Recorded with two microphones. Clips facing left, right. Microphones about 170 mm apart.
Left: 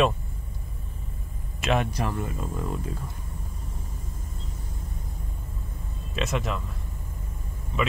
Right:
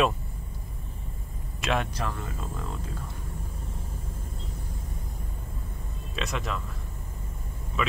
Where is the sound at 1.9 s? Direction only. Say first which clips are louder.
Left 4 dB; 15° left (ahead or behind).